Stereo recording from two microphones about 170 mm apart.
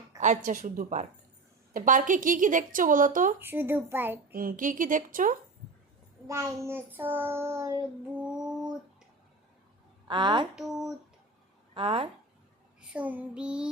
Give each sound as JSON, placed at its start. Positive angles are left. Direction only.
{"t": 0.2, "sound": "a woman's voice", "side_deg": -45}
{"t": 3.4, "sound": "child singing", "side_deg": -10}
{"t": 4.3, "sound": "a woman's voice", "side_deg": -55}
{"t": 6.2, "sound": "child singing", "side_deg": -15}
{"t": 8.4, "sound": "a sound", "side_deg": -5}
{"t": 10.1, "sound": "a woman's voice", "side_deg": -25}
{"t": 10.5, "sound": "child singing", "side_deg": 0}
{"t": 11.7, "sound": "speech", "side_deg": -30}
{"t": 12.8, "sound": "child singing", "side_deg": -5}